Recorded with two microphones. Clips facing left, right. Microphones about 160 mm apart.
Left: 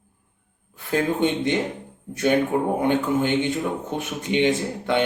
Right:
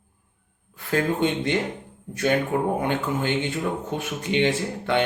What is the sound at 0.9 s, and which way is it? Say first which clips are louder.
Speech: left 1 dB; 20° left (ahead or behind).